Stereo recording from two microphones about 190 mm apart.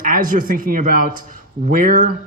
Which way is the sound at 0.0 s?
45° right (ahead or behind).